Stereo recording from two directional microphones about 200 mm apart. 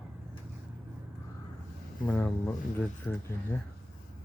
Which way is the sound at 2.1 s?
10° left (ahead or behind).